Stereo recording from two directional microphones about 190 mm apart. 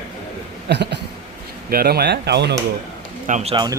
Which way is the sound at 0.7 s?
65° right (ahead or behind).